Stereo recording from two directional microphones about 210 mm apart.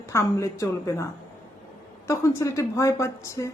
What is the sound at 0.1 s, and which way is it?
Speech, 15° left (ahead or behind).